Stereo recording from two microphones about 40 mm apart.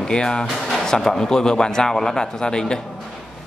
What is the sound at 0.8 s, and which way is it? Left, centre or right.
Speech, centre.